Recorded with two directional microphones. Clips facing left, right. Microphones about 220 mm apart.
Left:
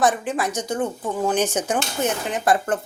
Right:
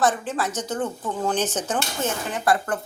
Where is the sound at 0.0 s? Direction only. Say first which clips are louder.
Left 2 dB; 15° left (ahead or behind).